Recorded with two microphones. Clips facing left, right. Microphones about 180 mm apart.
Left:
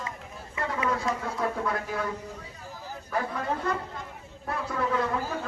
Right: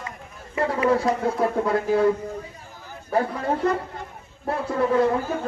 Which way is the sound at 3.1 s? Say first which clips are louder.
Right 7 dB; 30° right (ahead or behind).